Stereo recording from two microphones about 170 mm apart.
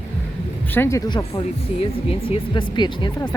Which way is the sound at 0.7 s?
15° left (ahead or behind).